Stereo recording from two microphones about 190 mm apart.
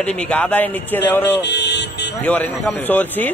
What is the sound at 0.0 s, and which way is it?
Speech, 5° left (ahead or behind).